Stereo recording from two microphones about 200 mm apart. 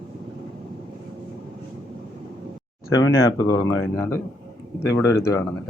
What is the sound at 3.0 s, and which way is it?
Speech, 20° left (ahead or behind).